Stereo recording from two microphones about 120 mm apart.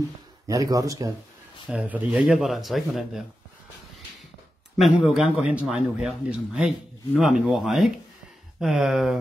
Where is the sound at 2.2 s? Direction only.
Centre (ahead or behind).